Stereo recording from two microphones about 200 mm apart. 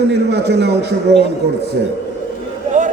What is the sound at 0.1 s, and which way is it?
Speech, 55° right (ahead or behind).